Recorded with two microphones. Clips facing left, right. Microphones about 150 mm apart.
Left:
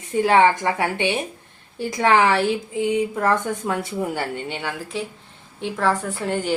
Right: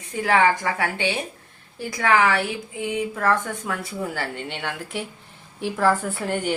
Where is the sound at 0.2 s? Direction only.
25° left (ahead or behind).